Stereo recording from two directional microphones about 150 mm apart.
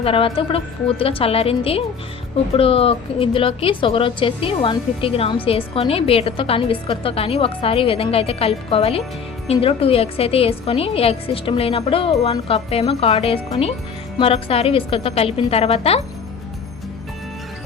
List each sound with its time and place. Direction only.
0.0 s a woman's voice: 40° left (ahead or behind)